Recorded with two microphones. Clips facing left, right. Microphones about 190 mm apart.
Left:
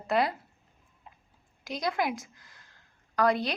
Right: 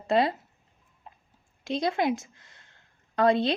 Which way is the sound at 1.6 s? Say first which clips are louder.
Right 4 dB; 25° right (ahead or behind).